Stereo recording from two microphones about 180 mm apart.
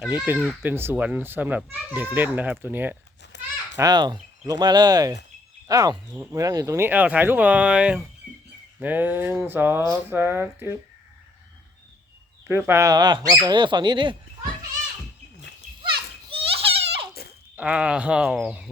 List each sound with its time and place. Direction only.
0.0 s a child's voice: 5° right (ahead or behind)
3.3 s a sound: 80° left
3.8 s a child's voice: 20° right (ahead or behind)
12.5 s speech: 15° right (ahead or behind)
16.3 s baby cry: 30° right (ahead or behind)
17.6 s speech: 5° right (ahead or behind)